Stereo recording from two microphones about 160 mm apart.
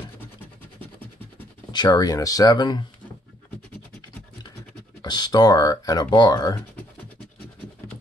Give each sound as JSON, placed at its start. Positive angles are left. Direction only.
{"t": 1.7, "sound": "speech", "side_deg": 25}
{"t": 5.0, "sound": "speech", "side_deg": 25}